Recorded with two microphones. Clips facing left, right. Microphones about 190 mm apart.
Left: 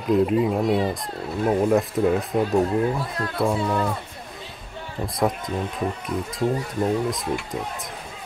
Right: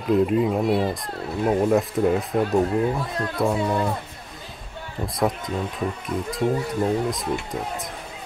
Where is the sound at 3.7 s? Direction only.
10° right (ahead or behind).